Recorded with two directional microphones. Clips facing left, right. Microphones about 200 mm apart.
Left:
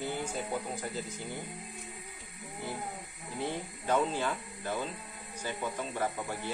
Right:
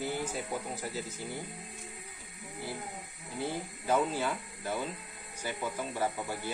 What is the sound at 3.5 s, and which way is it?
Speech, 5° right (ahead or behind).